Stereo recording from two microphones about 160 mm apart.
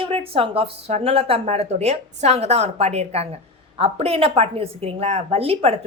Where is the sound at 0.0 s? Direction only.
35° right (ahead or behind).